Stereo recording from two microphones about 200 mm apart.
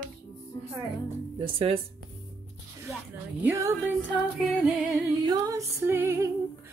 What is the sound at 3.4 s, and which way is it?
Music, 15° right (ahead or behind).